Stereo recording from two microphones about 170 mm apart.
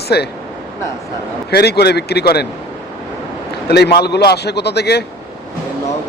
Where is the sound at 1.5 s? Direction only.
70° left (ahead or behind).